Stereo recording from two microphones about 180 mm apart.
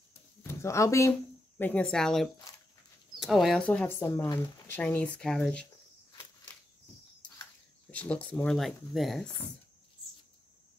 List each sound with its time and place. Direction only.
0.4 s speech: 15° left (ahead or behind)
7.9 s speech: 10° left (ahead or behind)